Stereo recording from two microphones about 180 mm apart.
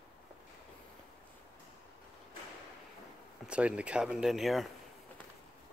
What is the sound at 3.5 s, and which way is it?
Speech, 5° right (ahead or behind).